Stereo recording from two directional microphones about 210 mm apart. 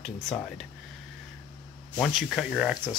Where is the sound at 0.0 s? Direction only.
5° left (ahead or behind).